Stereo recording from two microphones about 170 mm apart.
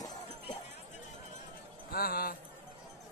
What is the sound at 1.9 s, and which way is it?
Music, 60° left (ahead or behind).